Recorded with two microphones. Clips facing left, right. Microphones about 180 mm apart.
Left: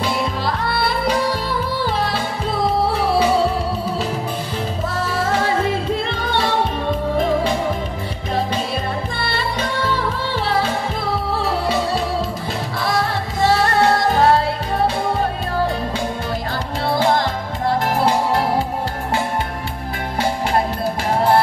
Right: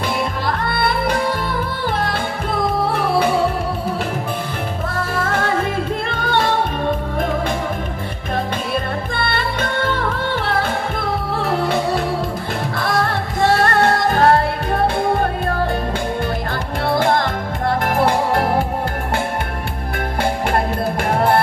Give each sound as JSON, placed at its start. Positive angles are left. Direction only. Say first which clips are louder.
{"t": 0.0, "sound": "music", "louder": "even", "side_deg": -55}
{"t": 5.0, "sound": "music", "louder": "left 1 dB", "side_deg": -55}
{"t": 8.7, "sound": "music", "louder": "right 2 dB", "side_deg": -55}
{"t": 16.9, "sound": "music", "louder": "even", "side_deg": -55}
{"t": 21.1, "sound": "music", "louder": "left 1 dB", "side_deg": -55}